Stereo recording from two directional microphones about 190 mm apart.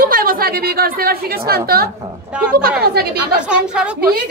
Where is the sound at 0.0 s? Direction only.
50° right (ahead or behind).